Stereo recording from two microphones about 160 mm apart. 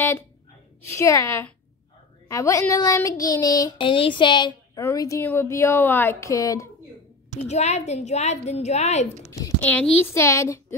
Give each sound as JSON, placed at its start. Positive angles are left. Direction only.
{"t": 0.9, "sound": "a woman's voice", "side_deg": 20}
{"t": 2.2, "sound": "child singing", "side_deg": 20}
{"t": 4.8, "sound": "a woman's voice", "side_deg": 20}
{"t": 7.3, "sound": "a woman's voice", "side_deg": 45}
{"t": 9.6, "sound": "a woman's voice", "side_deg": 10}